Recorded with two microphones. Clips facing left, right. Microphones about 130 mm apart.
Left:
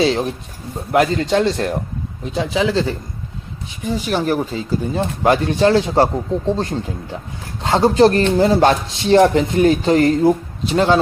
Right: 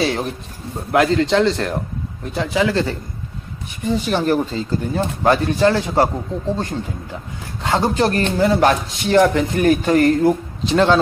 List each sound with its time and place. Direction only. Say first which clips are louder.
0.0 s speech: left 3 dB; 20° left (ahead or behind)
3.8 s speech: right 1 dB; 5° left (ahead or behind)
4.9 s speech: even; 20° left (ahead or behind)
10.7 s speech: even; 10° left (ahead or behind)